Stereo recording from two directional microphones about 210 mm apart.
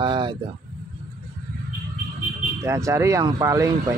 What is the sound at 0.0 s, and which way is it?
Speech, 20° right (ahead or behind).